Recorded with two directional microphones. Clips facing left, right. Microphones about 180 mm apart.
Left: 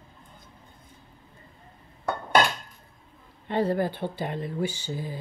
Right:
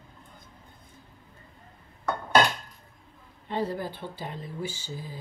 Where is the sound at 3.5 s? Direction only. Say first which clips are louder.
Left 5 dB; 65° left (ahead or behind).